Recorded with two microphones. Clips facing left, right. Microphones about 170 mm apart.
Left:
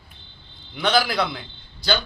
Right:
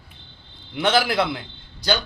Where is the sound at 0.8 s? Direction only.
25° right (ahead or behind).